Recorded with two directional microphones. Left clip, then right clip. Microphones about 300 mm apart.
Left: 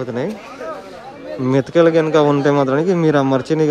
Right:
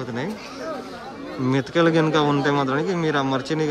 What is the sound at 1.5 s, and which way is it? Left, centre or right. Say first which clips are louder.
Speech: left 7 dB; centre.